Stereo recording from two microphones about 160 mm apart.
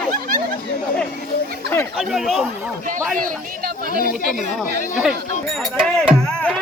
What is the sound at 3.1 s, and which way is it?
Speech, 65° right (ahead or behind).